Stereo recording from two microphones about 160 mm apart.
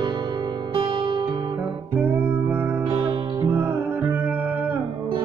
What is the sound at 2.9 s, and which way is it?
Music, 30° right (ahead or behind).